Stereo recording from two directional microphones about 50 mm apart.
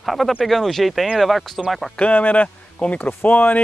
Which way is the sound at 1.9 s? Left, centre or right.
Left.